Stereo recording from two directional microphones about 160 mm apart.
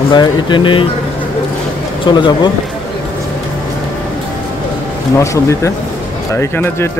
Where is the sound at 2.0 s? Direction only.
30° left (ahead or behind).